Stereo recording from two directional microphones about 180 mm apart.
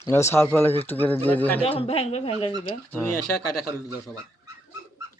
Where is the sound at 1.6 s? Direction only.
30° left (ahead or behind).